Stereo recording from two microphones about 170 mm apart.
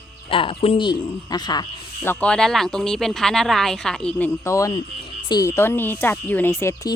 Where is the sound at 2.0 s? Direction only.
10° left (ahead or behind).